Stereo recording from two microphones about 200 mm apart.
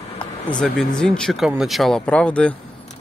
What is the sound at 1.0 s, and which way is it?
Speech, centre (ahead or behind).